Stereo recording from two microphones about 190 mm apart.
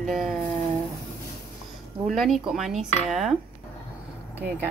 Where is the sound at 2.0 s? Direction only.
Centre (ahead or behind).